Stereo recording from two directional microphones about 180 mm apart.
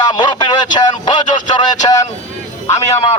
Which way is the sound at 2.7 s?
35° left (ahead or behind).